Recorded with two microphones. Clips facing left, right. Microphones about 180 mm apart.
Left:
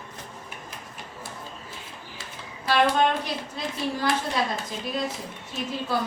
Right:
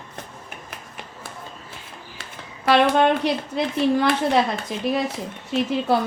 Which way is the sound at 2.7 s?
70° right (ahead or behind).